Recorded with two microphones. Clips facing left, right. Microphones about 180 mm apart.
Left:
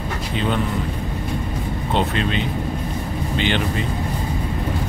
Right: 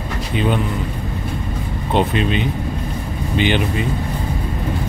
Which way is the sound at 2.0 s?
15° right (ahead or behind).